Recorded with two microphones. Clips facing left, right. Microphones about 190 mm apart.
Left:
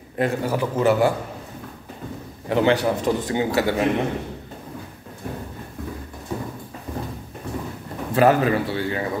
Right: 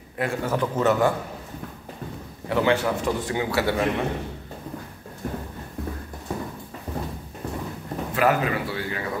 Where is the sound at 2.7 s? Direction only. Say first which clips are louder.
Left 3 dB; 35° left (ahead or behind).